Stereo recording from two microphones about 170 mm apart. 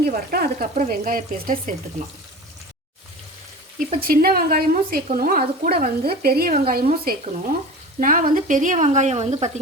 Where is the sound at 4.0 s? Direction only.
60° right (ahead or behind).